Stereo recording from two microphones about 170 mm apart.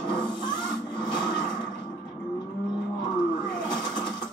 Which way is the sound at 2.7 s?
25° left (ahead or behind).